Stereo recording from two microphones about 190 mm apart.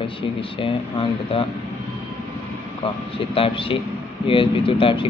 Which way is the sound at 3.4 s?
30° left (ahead or behind).